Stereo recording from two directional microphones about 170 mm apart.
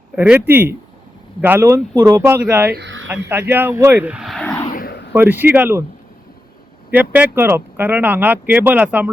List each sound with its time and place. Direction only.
0.2 s speech: 10° right (ahead or behind)
2.7 s speech: 90° right
3.5 s speech: 15° right (ahead or behind); by 4.5 s centre (ahead or behind)
4.7 s a sound: 60° left (ahead or behind)
5.1 s speech: 10° right (ahead or behind)
6.9 s speech: 10° right (ahead or behind)